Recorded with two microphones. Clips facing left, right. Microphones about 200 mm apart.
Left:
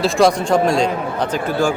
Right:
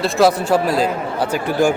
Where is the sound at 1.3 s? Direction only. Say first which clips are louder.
Right 3 dB; 15° right (ahead or behind).